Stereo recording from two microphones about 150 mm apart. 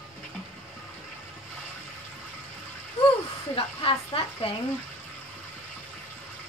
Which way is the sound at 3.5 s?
35° left (ahead or behind).